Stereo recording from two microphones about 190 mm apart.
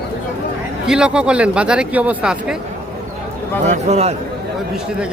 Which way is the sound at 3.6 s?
35° right (ahead or behind).